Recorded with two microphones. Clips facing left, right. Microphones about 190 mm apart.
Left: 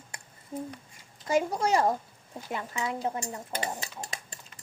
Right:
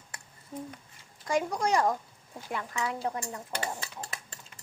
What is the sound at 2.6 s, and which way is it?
Stir, 20° left (ahead or behind).